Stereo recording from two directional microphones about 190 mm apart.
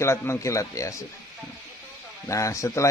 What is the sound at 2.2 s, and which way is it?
Speech, 15° left (ahead or behind).